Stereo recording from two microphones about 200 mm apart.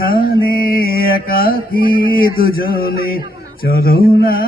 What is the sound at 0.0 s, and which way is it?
Mantra, 45° left (ahead or behind).